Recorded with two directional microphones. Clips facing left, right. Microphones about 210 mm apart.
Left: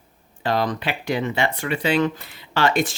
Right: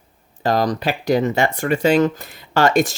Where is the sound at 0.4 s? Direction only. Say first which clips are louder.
Right 4 dB; 40° right (ahead or behind).